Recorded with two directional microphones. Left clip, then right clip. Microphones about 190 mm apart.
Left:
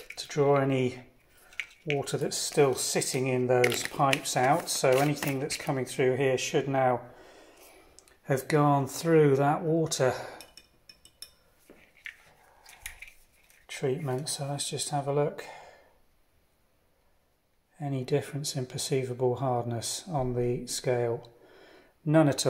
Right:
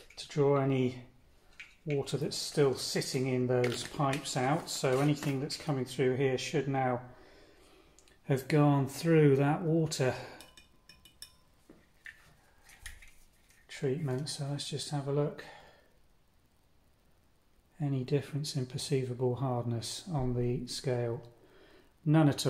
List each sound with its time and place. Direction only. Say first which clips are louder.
0.2 s speech: left 4 dB; 25° left (ahead or behind)
2.0 s speech: left 2 dB; 25° left (ahead or behind); by 10.3 s 10° left (ahead or behind)
13.7 s speech: left 4 dB; 20° left (ahead or behind)
17.7 s speech: left 4 dB; 15° left (ahead or behind)
21.6 s a sound: left 1 dB; 10° left (ahead or behind)